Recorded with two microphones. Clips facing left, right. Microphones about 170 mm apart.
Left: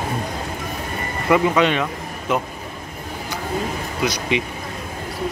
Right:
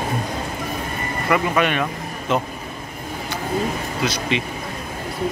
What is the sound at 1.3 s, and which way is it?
Speech, 20° left (ahead or behind).